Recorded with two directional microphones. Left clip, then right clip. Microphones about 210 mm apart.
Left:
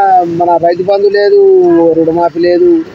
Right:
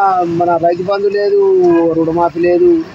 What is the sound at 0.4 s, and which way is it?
Speech, 5° left (ahead or behind).